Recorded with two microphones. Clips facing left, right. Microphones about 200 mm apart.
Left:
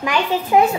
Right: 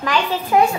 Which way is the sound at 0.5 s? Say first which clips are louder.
Left 1 dB; 20° left (ahead or behind).